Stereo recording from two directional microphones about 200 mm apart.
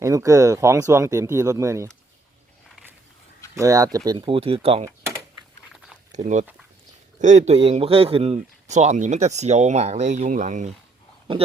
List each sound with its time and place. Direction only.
0.0 s speech: 15° right (ahead or behind)
3.5 s speech: 15° right (ahead or behind)
6.1 s speech: 35° right (ahead or behind)